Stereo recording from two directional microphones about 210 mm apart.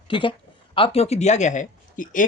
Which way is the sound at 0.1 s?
25° left (ahead or behind).